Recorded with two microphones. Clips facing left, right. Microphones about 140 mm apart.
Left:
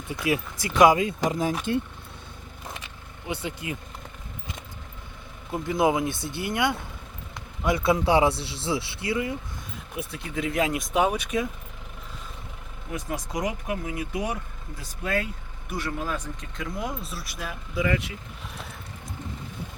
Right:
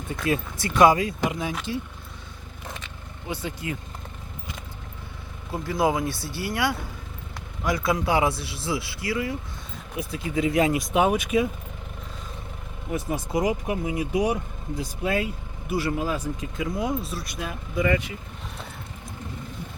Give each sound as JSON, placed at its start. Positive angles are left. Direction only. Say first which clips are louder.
{"t": 0.1, "sound": "speech", "louder": "even", "side_deg": 10}
{"t": 1.2, "sound": "speech", "louder": "left 2 dB", "side_deg": 40}
{"t": 3.2, "sound": "speech", "louder": "right 1 dB", "side_deg": 20}
{"t": 5.6, "sound": "speech", "louder": "left 1 dB", "side_deg": 20}
{"t": 9.9, "sound": "speech", "louder": "right 5 dB", "side_deg": 0}
{"t": 13.7, "sound": "speech", "louder": "right 4 dB", "side_deg": -15}